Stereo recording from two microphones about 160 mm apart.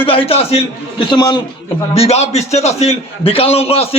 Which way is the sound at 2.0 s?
40° left (ahead or behind).